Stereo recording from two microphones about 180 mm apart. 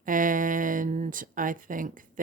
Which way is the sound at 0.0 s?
50° right (ahead or behind).